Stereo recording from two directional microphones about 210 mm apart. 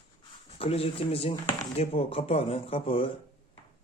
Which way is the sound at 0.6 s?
25° left (ahead or behind).